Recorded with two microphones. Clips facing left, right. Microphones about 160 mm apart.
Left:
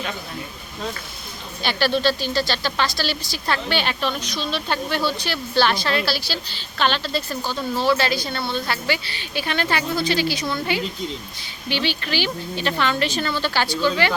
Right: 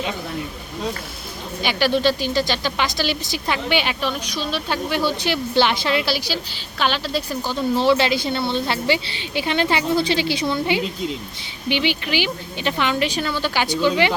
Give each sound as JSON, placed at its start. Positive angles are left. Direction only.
{"t": 1.6, "sound": "a woman's voice", "side_deg": -15}